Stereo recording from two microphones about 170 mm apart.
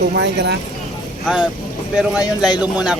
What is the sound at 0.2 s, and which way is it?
Speech, 85° right.